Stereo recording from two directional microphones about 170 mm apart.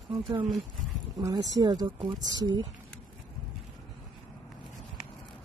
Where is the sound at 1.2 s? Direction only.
20° right (ahead or behind).